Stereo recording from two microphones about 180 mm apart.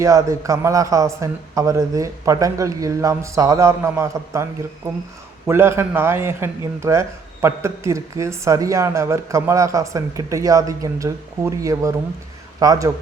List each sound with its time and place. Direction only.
0.0 s a man's voice: 15° right (ahead or behind)